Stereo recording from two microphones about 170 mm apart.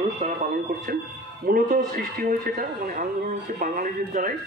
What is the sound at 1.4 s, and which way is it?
Speech, 55° right (ahead or behind).